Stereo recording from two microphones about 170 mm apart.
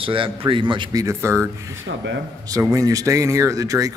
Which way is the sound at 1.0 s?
15° right (ahead or behind).